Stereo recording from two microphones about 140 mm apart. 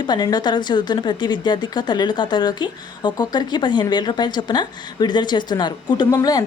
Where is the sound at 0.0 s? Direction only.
30° left (ahead or behind).